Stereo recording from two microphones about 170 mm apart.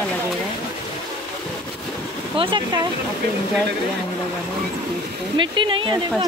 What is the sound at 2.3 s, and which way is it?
Speech, 30° right (ahead or behind).